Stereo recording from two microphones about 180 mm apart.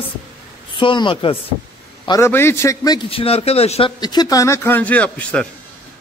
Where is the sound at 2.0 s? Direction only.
15° left (ahead or behind); by 3.9 s 35° left (ahead or behind).